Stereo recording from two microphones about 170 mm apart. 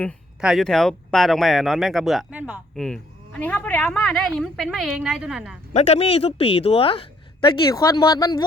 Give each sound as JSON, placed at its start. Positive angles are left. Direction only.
{"t": 0.4, "sound": "a woman's voice", "side_deg": 0}
{"t": 5.7, "sound": "speech", "side_deg": 40}
{"t": 7.4, "sound": "speech", "side_deg": 20}